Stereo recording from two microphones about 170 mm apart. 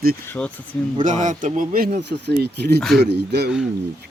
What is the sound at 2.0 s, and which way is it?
Speech, 80° right.